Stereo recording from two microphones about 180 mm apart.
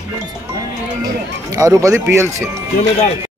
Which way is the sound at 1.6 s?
15° right (ahead or behind).